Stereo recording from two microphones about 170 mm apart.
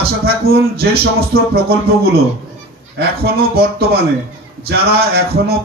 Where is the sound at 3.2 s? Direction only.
65° right (ahead or behind).